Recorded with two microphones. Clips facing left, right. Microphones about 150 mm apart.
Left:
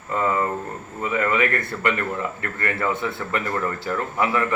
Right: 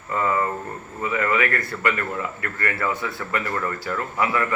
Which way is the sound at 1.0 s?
20° left (ahead or behind).